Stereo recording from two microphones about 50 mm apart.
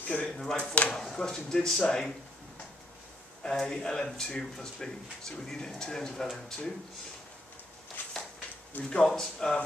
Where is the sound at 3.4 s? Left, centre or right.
Centre.